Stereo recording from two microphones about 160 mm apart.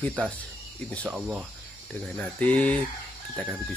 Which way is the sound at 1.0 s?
10° right (ahead or behind).